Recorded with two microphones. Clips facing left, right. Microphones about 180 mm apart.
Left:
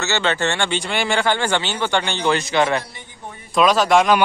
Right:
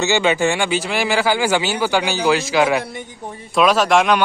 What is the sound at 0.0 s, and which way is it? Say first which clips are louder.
Speech: right 4 dB; 10° right (ahead or behind).